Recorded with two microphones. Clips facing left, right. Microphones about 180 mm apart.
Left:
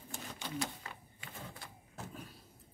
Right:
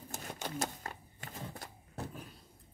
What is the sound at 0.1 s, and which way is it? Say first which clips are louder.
Sewing machine: right 1 dB; 45° right (ahead or behind).